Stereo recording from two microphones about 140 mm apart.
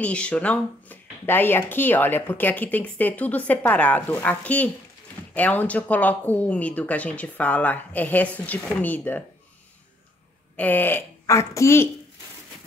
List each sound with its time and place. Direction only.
0.0 s speech: 10° left (ahead or behind)
10.5 s a woman's voice: 10° left (ahead or behind)